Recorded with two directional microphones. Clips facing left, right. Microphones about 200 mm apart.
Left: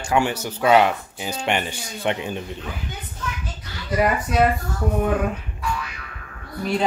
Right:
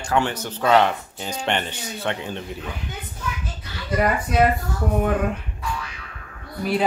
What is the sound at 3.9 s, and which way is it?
Speech, centre (ahead or behind).